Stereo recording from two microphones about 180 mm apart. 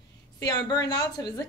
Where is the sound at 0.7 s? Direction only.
20° left (ahead or behind).